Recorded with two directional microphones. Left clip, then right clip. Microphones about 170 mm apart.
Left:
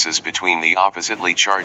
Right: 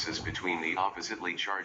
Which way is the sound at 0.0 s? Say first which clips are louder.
Left 15 dB; 50° left (ahead or behind).